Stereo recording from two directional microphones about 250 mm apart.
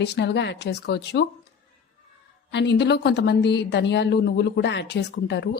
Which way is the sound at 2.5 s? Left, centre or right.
Left.